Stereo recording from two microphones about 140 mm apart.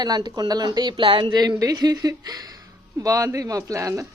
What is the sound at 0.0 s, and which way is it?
A woman's voice, 30° right (ahead or behind).